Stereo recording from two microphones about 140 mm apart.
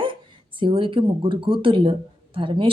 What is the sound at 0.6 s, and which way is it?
Speech, 35° right (ahead or behind).